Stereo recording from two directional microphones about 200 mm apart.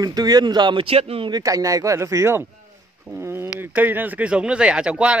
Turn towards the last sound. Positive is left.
turn(degrees=-5)  # may be behind; listen again after turning